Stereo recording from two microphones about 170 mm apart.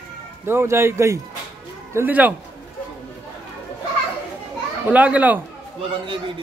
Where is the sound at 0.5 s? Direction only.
15° right (ahead or behind).